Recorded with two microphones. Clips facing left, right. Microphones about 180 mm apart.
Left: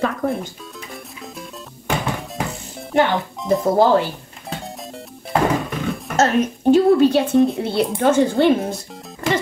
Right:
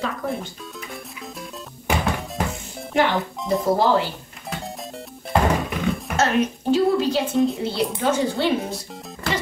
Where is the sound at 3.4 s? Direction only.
Centre (ahead or behind).